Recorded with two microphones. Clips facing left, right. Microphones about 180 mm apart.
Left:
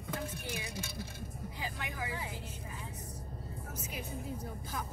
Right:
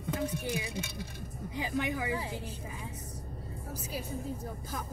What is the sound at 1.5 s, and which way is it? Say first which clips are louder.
Speech: right 10 dB; 20° right (ahead or behind).